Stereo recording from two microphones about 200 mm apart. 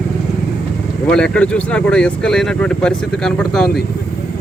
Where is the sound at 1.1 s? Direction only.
5° left (ahead or behind).